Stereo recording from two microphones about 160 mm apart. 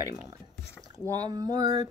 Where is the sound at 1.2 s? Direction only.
25° right (ahead or behind).